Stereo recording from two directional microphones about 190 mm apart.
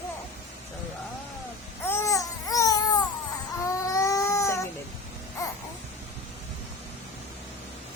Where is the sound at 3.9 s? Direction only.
15° left (ahead or behind).